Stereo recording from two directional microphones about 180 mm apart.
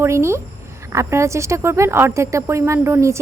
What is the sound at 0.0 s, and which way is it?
A woman's voice, 15° right (ahead or behind).